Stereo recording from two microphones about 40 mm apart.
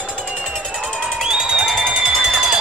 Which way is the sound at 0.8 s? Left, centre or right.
Centre.